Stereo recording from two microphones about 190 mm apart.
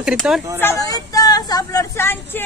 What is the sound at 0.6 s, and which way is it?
Vehicle, 15° left (ahead or behind).